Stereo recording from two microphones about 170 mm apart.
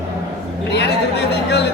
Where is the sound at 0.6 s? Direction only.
85° left.